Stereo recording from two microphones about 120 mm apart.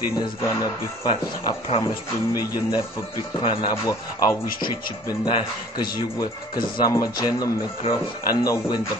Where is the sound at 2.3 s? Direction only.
30° left (ahead or behind).